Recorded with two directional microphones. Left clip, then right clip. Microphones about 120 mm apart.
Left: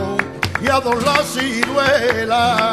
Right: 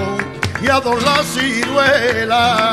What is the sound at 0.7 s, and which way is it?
Music, 15° right (ahead or behind).